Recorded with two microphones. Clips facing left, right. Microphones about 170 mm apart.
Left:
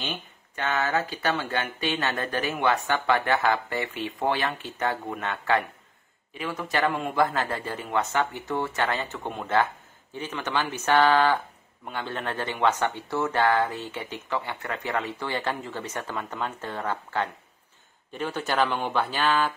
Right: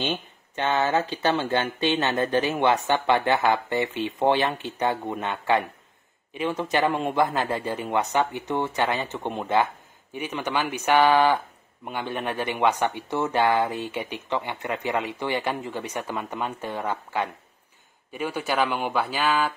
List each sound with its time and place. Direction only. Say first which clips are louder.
0.0 s speech: right 6 dB; 25° right (ahead or behind); by 19.4 s 10° right (ahead or behind)